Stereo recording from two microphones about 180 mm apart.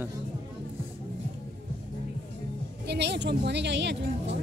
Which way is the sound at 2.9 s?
70° right (ahead or behind).